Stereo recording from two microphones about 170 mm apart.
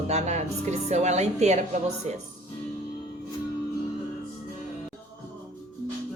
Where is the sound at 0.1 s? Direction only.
40° right (ahead or behind).